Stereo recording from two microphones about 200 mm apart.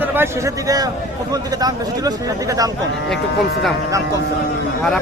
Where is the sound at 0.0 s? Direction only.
10° right (ahead or behind).